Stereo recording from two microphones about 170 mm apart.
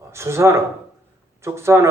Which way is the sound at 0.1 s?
15° right (ahead or behind).